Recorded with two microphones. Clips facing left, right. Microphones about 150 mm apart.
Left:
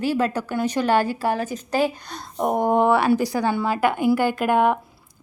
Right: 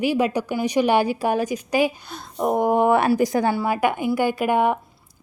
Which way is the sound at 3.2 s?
20° right (ahead or behind).